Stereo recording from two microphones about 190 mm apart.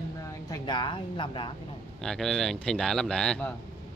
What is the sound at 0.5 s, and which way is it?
A woman's voice, 25° left (ahead or behind).